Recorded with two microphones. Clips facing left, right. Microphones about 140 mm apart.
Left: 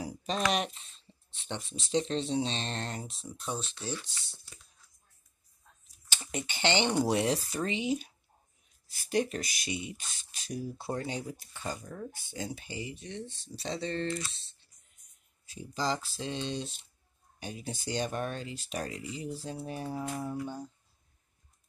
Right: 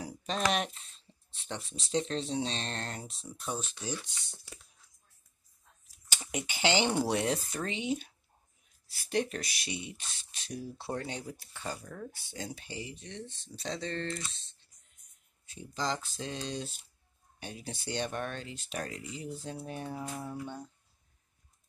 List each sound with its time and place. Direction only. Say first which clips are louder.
0.0 s speech: left 1 dB; centre (ahead or behind)
3.5 s speech: even; 10° right (ahead or behind)
6.0 s speech: even; 10° right (ahead or behind)